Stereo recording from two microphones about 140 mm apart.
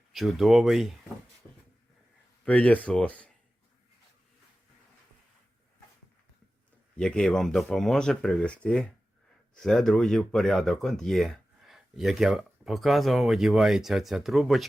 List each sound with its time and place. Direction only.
0.1 s speech: centre (ahead or behind)
2.4 s speech: 10° left (ahead or behind)
6.9 s speech: 5° left (ahead or behind)